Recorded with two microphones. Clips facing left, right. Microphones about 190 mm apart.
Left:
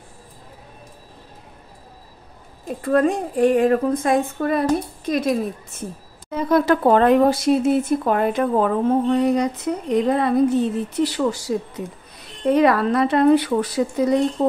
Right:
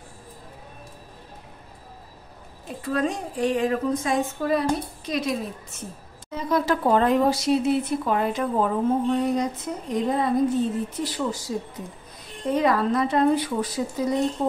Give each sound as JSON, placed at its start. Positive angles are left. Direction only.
{"t": 2.8, "sound": "a woman's voice", "side_deg": 55}